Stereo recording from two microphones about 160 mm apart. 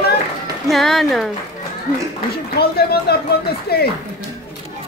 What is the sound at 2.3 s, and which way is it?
Speech, 80° left.